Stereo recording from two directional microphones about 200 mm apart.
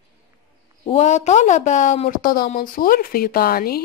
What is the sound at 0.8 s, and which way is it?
Speech, 35° left (ahead or behind).